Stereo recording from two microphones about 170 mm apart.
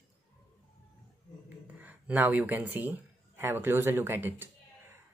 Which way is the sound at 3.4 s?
15° right (ahead or behind).